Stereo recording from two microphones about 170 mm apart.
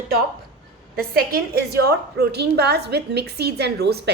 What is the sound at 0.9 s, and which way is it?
A woman's voice, 60° right (ahead or behind).